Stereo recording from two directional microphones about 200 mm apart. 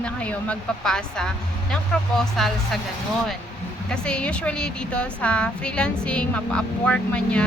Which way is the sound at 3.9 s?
5° left (ahead or behind).